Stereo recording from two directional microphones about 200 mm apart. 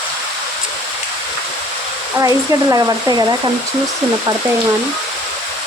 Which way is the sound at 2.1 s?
15° right (ahead or behind).